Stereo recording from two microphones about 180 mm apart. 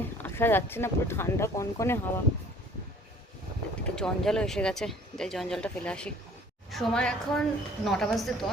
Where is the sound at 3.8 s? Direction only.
5° left (ahead or behind).